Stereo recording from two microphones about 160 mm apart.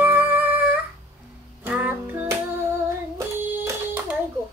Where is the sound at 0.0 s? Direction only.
10° right (ahead or behind).